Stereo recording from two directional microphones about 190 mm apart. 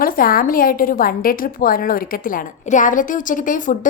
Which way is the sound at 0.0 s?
50° left (ahead or behind).